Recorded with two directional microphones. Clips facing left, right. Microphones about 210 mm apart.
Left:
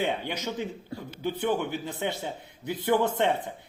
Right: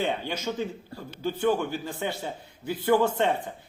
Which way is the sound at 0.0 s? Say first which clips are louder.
Right 1 dB; 15° left (ahead or behind).